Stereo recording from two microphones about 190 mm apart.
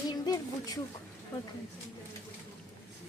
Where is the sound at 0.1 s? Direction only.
20° left (ahead or behind).